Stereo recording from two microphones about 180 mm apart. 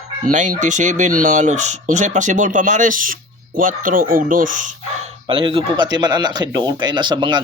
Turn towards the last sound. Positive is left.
turn(degrees=-25)  # may be behind; listen again after turning